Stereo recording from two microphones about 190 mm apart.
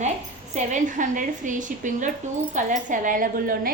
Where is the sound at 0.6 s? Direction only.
40° right (ahead or behind).